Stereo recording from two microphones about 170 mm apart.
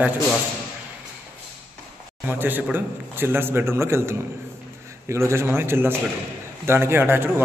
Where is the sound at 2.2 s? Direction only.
10° right (ahead or behind).